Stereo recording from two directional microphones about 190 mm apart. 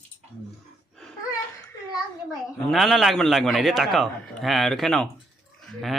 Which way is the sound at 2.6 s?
Centre (ahead or behind).